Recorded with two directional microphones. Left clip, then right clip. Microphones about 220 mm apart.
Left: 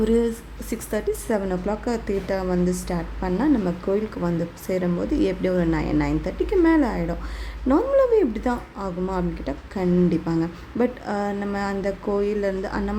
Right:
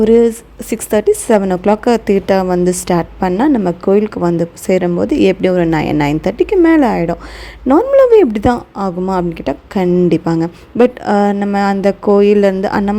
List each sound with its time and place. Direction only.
0.0 s speech: 30° right (ahead or behind)